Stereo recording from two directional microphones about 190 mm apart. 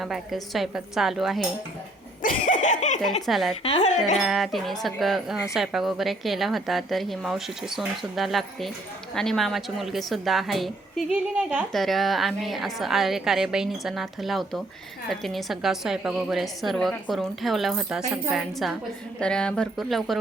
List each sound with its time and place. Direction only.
0.0 s a woman's voice: centre (ahead or behind)
2.2 s laughter: 40° left (ahead or behind)
3.0 s a woman's voice: centre (ahead or behind)
3.6 s speech: 30° left (ahead or behind)
4.2 s a woman's voice: centre (ahead or behind)